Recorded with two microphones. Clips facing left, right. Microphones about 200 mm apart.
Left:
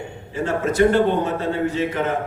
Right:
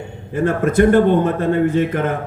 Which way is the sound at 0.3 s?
55° right (ahead or behind).